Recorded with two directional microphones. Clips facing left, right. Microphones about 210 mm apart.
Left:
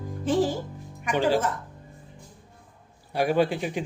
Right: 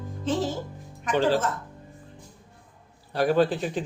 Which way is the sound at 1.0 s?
10° left (ahead or behind).